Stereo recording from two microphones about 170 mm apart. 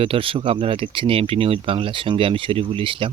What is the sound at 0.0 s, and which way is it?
Speech, 30° right (ahead or behind).